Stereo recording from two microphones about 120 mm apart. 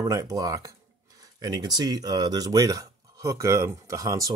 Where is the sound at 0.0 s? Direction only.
25° right (ahead or behind).